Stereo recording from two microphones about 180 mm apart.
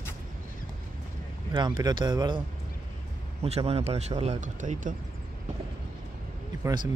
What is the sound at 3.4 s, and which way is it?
Speech, 35° right (ahead or behind).